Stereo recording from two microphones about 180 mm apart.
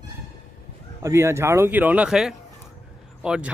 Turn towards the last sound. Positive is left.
turn(degrees=-5)  # may be behind; listen again after turning